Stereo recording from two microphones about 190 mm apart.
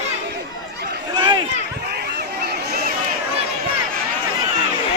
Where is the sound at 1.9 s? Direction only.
55° right (ahead or behind).